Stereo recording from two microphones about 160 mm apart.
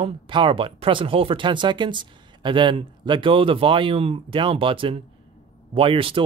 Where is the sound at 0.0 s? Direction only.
30° right (ahead or behind).